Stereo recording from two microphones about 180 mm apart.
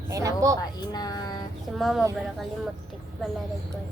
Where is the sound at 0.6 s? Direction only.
20° left (ahead or behind).